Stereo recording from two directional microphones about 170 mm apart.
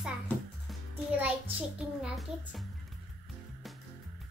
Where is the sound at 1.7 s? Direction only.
5° right (ahead or behind).